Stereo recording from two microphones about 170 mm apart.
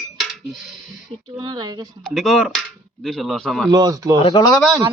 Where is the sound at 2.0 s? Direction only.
Centre (ahead or behind).